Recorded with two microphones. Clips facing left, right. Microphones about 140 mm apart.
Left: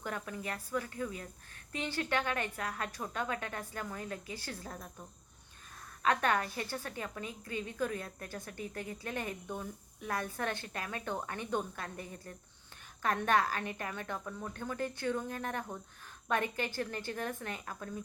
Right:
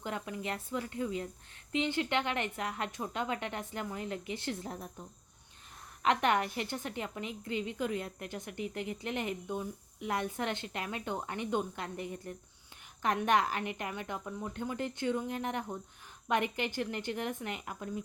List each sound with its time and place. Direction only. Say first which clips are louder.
0.0 s a woman's voice: right 2 dB; 20° right (ahead or behind)
6.0 s a woman's voice: right 2 dB; 20° right (ahead or behind)